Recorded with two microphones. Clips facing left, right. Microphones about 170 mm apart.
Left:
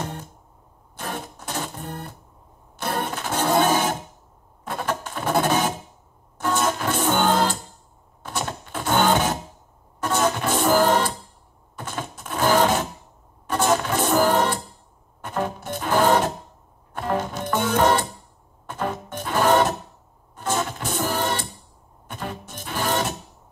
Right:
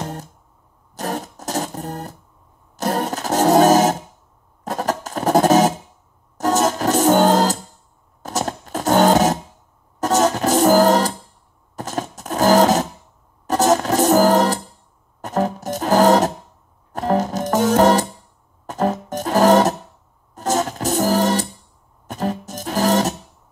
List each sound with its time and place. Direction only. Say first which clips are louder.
0.9 s music: right 6 dB; 40° right (ahead or behind)
4.6 s scratch: right 5 dB; 40° right (ahead or behind)
6.3 s music: right 5 dB; 40° right (ahead or behind)
8.2 s a sound: right 5 dB; 40° right (ahead or behind)
9.9 s music: right 5 dB; 40° right (ahead or behind)
11.7 s a sound: right 6 dB; 40° right (ahead or behind)
13.5 s music: right 5 dB; 40° right (ahead or behind)